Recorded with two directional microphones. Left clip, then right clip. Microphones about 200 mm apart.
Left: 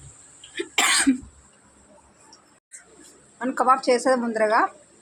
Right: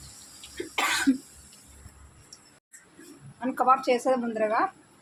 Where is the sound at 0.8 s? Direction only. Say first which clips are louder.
Left 6 dB; 10° left (ahead or behind).